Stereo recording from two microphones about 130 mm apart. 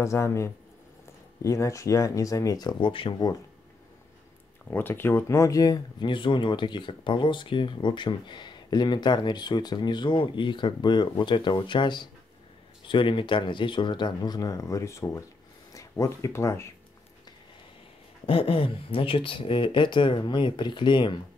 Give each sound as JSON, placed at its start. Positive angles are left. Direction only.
{"t": 0.0, "sound": "speech", "side_deg": 20}
{"t": 4.6, "sound": "speech", "side_deg": 15}
{"t": 18.2, "sound": "speech", "side_deg": 45}